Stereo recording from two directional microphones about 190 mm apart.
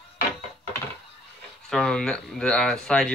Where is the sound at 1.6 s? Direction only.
5° left (ahead or behind).